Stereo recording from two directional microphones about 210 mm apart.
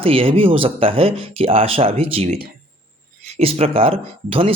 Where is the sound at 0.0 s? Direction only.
25° right (ahead or behind).